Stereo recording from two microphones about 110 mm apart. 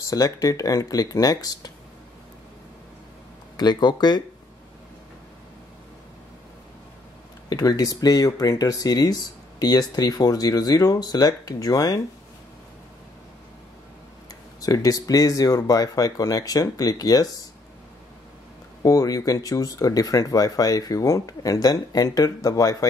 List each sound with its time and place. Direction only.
0.0 s speech: 30° left (ahead or behind)
3.5 s speech: 40° left (ahead or behind)
7.4 s speech: 35° left (ahead or behind)
14.6 s speech: 35° left (ahead or behind)
18.8 s speech: 30° left (ahead or behind)